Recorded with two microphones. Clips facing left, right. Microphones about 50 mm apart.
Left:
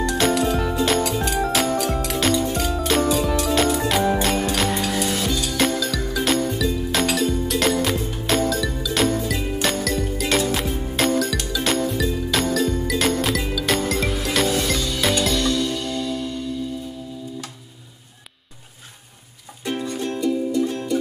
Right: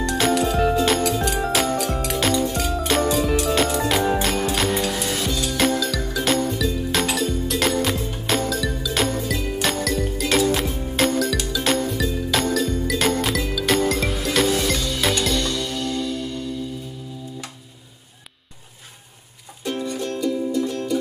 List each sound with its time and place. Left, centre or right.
0.1 s music: centre
19.6 s music: centre